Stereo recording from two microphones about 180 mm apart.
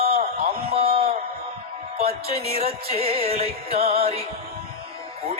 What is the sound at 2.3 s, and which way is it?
Music, 35° right (ahead or behind).